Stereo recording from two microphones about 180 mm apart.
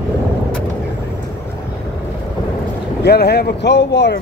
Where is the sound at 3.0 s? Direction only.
65° left (ahead or behind).